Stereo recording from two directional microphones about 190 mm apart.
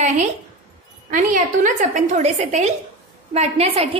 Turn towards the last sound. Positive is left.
turn(degrees=-35)  # may be behind; listen again after turning